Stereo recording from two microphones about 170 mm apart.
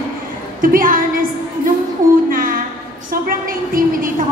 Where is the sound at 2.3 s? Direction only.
55° right (ahead or behind).